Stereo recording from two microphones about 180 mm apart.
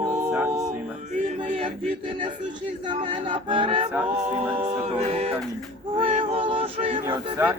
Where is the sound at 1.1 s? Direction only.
35° right (ahead or behind).